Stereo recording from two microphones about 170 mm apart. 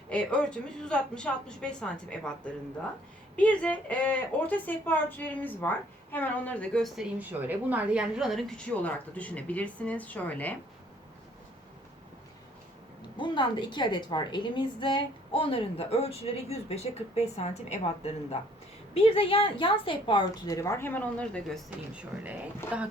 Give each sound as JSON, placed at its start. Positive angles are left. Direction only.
{"t": 0.1, "sound": "a woman's voice", "side_deg": 5}
{"t": 13.0, "sound": "a woman's voice", "side_deg": 30}
{"t": 22.2, "sound": "speech", "side_deg": -10}